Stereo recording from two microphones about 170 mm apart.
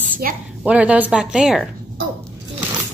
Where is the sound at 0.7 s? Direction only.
10° right (ahead or behind).